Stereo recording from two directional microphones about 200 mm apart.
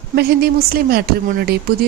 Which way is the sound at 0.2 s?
50° right (ahead or behind).